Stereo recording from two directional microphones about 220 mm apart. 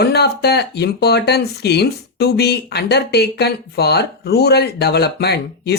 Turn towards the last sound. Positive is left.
turn(degrees=50)  # may be behind; listen again after turning